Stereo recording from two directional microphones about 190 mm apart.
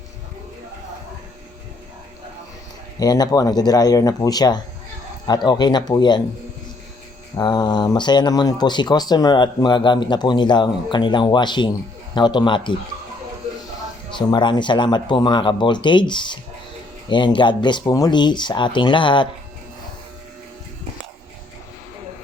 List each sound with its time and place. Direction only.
3.0 s speech: 20° left (ahead or behind)
7.3 s speech: 20° left (ahead or behind)
14.2 s speech: 25° left (ahead or behind)